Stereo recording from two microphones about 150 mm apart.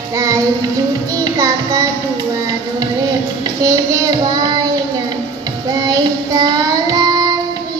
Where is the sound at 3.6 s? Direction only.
25° right (ahead or behind).